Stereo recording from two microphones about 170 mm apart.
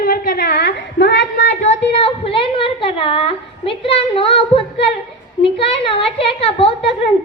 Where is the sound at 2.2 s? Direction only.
30° left (ahead or behind).